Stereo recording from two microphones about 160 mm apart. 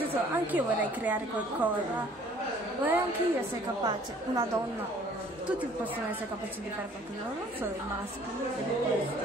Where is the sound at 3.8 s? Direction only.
25° right (ahead or behind).